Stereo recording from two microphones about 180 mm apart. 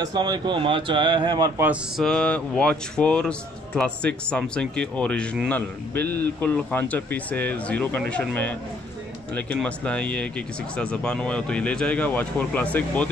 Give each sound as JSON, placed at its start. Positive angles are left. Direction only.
{"t": 0.0, "sound": "speech", "side_deg": -25}
{"t": 1.6, "sound": "a sound", "side_deg": -5}
{"t": 2.0, "sound": "a man's voice", "side_deg": 5}
{"t": 6.0, "sound": "speech", "side_deg": -65}
{"t": 6.4, "sound": "speech", "side_deg": 10}